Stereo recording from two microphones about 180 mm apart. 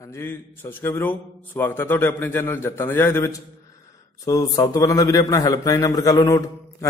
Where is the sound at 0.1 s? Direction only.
10° left (ahead or behind).